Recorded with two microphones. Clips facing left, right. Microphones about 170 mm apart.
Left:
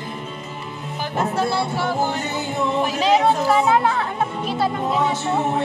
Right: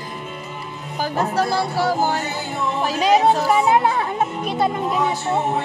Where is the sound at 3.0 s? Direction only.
15° right (ahead or behind).